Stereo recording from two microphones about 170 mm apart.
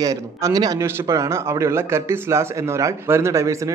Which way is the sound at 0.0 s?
20° right (ahead or behind).